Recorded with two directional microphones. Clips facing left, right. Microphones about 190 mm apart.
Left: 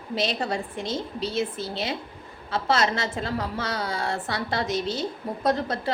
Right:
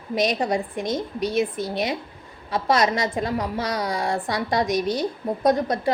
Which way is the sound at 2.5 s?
15° right (ahead or behind).